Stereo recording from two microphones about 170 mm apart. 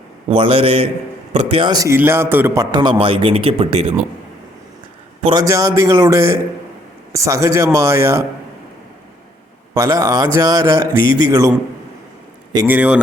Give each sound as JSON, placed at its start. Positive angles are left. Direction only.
{"t": 0.3, "sound": "speech", "side_deg": -35}
{"t": 1.7, "sound": "speech", "side_deg": -15}
{"t": 2.7, "sound": "speech", "side_deg": -30}
{"t": 5.2, "sound": "speech", "side_deg": -25}
{"t": 9.7, "sound": "speech", "side_deg": -20}
{"t": 12.6, "sound": "speech", "side_deg": -10}